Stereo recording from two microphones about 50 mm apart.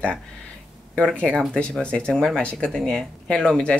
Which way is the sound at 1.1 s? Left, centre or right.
Left.